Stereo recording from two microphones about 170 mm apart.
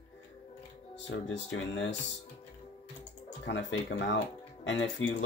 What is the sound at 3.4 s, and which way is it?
Speech, 90° left.